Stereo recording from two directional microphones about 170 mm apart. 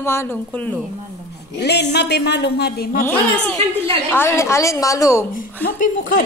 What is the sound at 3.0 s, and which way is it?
Speech, 10° left (ahead or behind).